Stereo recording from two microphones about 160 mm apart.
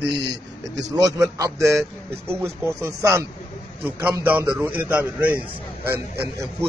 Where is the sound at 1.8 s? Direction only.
15° right (ahead or behind).